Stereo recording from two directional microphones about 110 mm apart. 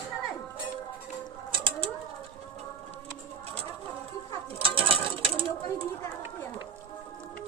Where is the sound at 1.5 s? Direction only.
50° right (ahead or behind).